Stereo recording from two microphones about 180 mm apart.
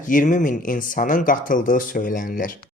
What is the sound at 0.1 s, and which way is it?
Speech, 45° left (ahead or behind).